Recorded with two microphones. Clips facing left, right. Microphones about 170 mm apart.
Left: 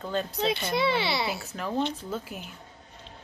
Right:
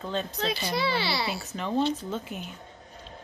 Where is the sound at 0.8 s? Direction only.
20° left (ahead or behind).